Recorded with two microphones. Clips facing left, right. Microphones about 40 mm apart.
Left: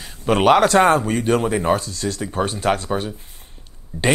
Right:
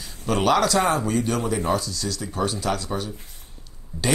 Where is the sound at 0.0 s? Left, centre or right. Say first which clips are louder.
Left 6 dB; left.